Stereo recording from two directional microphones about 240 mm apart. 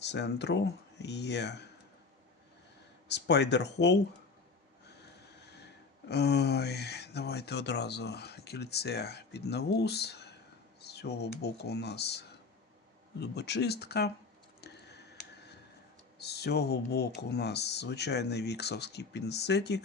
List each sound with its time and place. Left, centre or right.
0.0 s speech: left
3.1 s speech: left
6.1 s speech: left
14.6 s a sound: left
16.1 s speech: left